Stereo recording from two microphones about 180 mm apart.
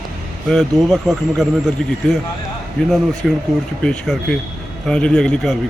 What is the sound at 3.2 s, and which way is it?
Speech, centre (ahead or behind).